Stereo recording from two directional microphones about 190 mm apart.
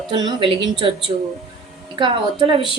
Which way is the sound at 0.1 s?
25° right (ahead or behind).